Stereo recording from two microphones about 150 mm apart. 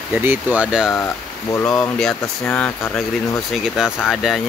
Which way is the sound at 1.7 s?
5° left (ahead or behind).